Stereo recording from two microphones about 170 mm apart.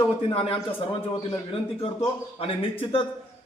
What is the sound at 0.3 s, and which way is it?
Speech, 35° left (ahead or behind).